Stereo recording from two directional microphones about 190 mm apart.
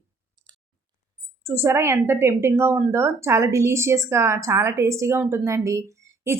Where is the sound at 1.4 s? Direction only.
15° right (ahead or behind).